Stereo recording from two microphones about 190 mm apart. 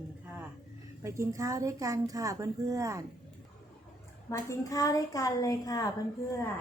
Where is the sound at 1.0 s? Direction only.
15° right (ahead or behind).